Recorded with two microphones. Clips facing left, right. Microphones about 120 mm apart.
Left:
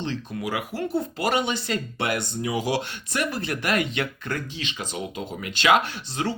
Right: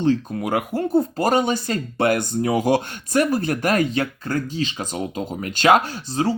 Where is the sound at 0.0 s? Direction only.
45° right (ahead or behind).